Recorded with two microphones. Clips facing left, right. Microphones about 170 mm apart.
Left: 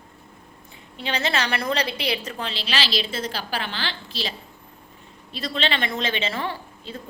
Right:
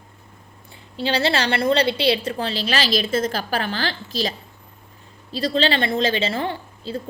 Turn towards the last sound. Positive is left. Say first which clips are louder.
# right 4 dB
turn(degrees=-30)  # may be behind; listen again after turning